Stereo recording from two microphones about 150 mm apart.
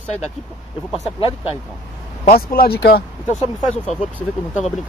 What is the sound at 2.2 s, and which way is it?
Speech, 80° left.